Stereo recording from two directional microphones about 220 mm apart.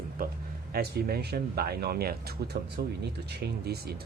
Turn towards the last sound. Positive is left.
turn(degrees=-45)  # may be behind; listen again after turning